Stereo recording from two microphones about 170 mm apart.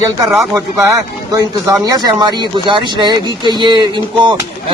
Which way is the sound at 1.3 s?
20° right (ahead or behind).